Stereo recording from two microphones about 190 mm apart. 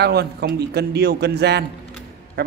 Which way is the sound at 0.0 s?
60° right (ahead or behind).